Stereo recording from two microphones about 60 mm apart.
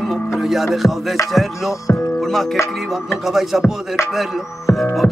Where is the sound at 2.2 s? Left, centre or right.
Centre.